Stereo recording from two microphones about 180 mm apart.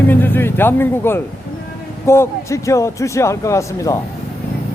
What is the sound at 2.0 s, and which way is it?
Speech, 15° left (ahead or behind).